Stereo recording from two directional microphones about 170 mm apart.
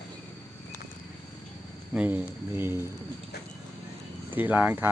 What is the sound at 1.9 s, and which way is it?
Speech, 10° right (ahead or behind).